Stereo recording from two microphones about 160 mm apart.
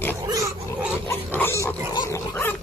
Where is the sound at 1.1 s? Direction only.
15° left (ahead or behind).